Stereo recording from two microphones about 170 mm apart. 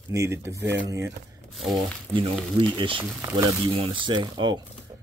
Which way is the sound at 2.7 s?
30° right (ahead or behind).